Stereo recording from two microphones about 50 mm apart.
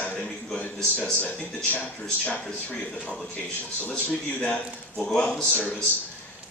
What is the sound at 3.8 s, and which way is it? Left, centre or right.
Speech, left.